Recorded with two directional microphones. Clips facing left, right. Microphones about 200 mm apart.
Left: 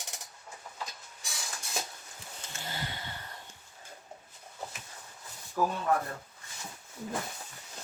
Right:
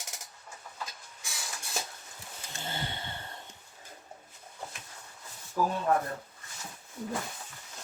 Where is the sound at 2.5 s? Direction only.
25° right (ahead or behind).